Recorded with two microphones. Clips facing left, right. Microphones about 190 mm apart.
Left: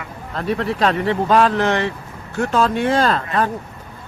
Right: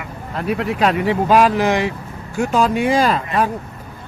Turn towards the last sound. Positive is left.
turn(degrees=-10)  # may be behind; listen again after turning